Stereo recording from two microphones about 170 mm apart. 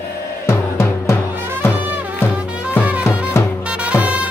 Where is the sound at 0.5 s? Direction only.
15° left (ahead or behind).